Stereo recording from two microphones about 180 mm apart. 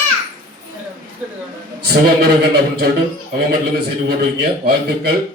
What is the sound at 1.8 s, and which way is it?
A man's voice, 60° right (ahead or behind).